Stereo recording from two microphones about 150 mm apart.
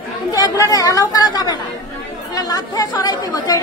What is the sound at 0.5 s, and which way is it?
Speech, 20° left (ahead or behind).